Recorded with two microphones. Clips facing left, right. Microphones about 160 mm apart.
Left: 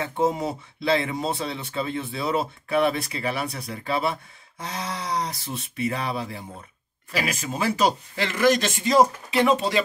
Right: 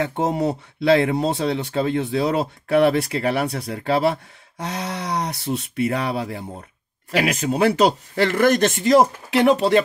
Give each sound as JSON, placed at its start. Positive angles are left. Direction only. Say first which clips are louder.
{"t": 0.0, "sound": "speech", "louder": "right 3 dB", "side_deg": -70}